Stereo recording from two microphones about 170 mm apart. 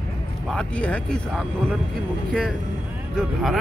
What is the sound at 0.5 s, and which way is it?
Speech, 5° left (ahead or behind).